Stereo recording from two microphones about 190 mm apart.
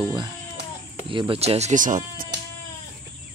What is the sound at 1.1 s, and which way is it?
Speech, 25° right (ahead or behind).